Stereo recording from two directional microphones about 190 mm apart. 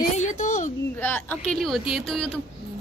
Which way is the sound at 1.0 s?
10° left (ahead or behind).